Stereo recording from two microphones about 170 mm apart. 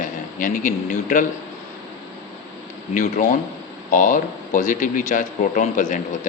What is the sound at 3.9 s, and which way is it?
A man's voice, 50° left (ahead or behind).